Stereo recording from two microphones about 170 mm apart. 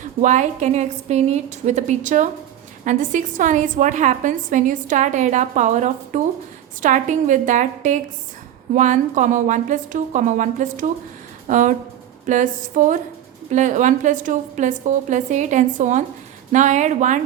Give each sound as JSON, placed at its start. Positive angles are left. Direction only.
{"t": 0.0, "sound": "a woman's voice", "side_deg": -45}